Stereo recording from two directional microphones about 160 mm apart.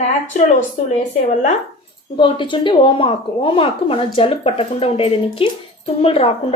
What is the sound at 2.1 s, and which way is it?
A woman's voice, 30° left (ahead or behind).